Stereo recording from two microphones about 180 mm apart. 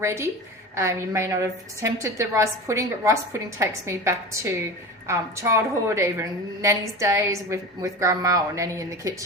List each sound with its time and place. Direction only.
0.0 s a woman's voice: 15° right (ahead or behind)